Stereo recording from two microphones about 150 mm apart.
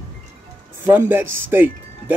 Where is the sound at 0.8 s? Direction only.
15° right (ahead or behind).